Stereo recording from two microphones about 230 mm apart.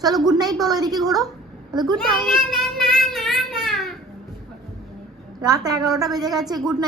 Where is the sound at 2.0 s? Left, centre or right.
Centre.